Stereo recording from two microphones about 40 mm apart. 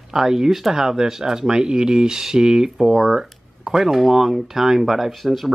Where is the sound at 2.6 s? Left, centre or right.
Centre.